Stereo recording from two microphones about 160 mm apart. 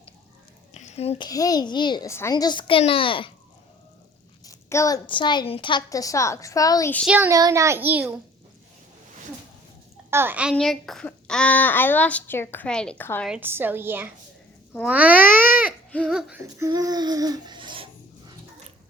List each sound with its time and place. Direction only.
0.7 s a sound: 45° left (ahead or behind)
1.3 s a child's voice: 25° left (ahead or behind)
4.4 s a sound: 20° left (ahead or behind)
5.0 s a child's voice: 30° left (ahead or behind)
7.0 s a child's voice: 5° right (ahead or behind)
7.3 s a child's voice: 20° right (ahead or behind)
10.1 s a child's voice: 15° right (ahead or behind)
10.5 s a child's voice: centre (ahead or behind)
13.2 s a child's voice: 10° right (ahead or behind)
14.8 s babbling: 10° right (ahead or behind)
15.9 s a sound: 5° left (ahead or behind)
16.1 s child singing: 5° right (ahead or behind)
16.4 s speech: 20° right (ahead or behind)